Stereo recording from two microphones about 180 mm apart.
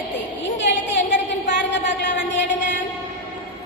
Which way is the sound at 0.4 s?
80° left.